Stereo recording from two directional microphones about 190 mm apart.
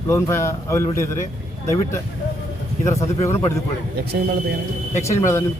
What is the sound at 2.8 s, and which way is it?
Speech, 15° left (ahead or behind).